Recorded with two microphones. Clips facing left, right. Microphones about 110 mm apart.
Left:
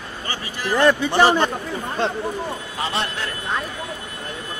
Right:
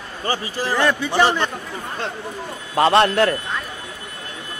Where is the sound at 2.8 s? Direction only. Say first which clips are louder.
Right 13 dB; 65° right (ahead or behind).